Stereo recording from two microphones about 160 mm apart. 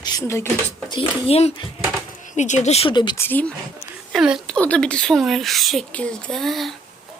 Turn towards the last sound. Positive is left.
turn(degrees=0)  # may be behind; listen again after turning